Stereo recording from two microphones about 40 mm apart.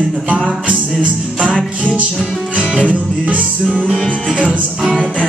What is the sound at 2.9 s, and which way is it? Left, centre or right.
Music, right.